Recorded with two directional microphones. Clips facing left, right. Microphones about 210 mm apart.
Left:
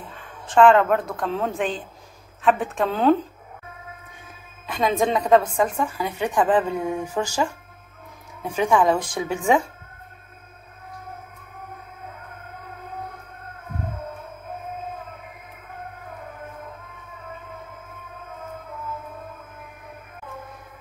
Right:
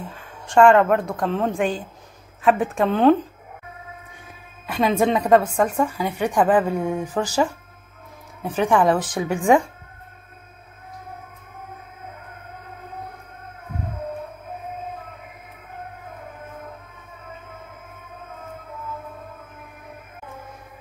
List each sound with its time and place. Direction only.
0.1 s a woman's voice: centre (ahead or behind)
4.6 s a woman's voice: 10° right (ahead or behind)
6.9 s speech: 10° left (ahead or behind)
8.6 s a woman's voice: 10° right (ahead or behind)